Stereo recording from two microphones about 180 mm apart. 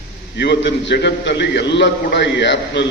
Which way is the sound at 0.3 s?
70° left (ahead or behind).